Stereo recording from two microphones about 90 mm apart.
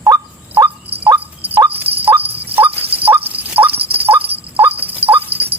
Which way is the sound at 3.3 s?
20° right (ahead or behind).